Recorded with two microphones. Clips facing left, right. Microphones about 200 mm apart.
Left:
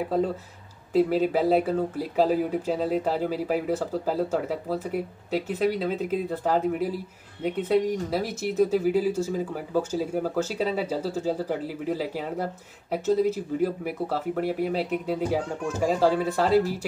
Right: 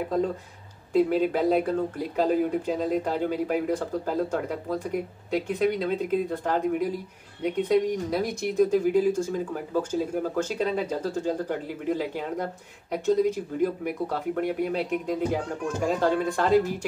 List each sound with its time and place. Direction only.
0.9 s speech: 5° left (ahead or behind)